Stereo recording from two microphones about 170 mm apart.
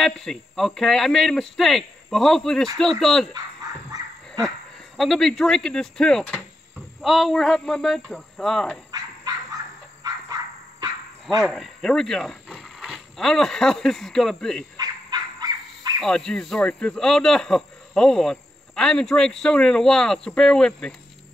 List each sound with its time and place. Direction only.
0.0 s speech: 5° left (ahead or behind)
4.9 s speech: centre (ahead or behind)
10.8 s dog: 20° right (ahead or behind)
11.4 s speech: centre (ahead or behind)
14.8 s a sound: 25° right (ahead or behind)
16.0 s speech: 5° left (ahead or behind)